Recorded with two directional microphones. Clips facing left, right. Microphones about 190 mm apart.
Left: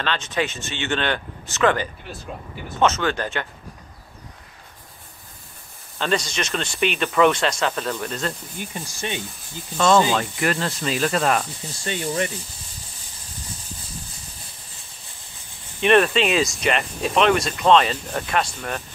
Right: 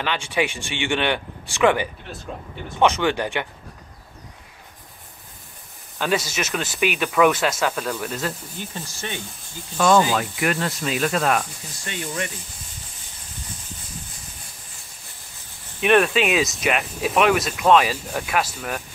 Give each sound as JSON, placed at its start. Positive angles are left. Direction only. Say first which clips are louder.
{"t": 0.0, "sound": "speech", "louder": "right 1 dB", "side_deg": -10}
{"t": 5.9, "sound": "speech", "louder": "even", "side_deg": -5}
{"t": 8.7, "sound": "speech", "louder": "left 4 dB", "side_deg": 20}
{"t": 10.1, "sound": "speech", "louder": "even", "side_deg": -5}
{"t": 11.8, "sound": "speech", "louder": "left 5 dB", "side_deg": 30}
{"t": 15.8, "sound": "speech", "louder": "left 1 dB", "side_deg": -5}